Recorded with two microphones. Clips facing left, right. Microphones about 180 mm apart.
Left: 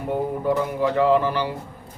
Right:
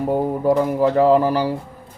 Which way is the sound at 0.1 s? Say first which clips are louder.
Right 3 dB; 40° right (ahead or behind).